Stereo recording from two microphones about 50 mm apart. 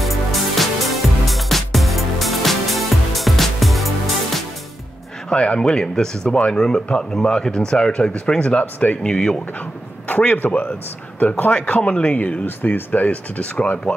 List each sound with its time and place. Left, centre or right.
0.0 s music: centre
5.3 s speech: left
8.7 s speech: left
9.0 s speech: centre
10.0 s speech: left
12.4 s speech: left